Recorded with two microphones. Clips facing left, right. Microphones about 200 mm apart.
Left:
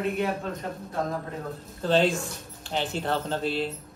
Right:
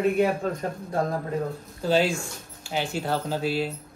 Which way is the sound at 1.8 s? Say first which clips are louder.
Even; 5° right (ahead or behind).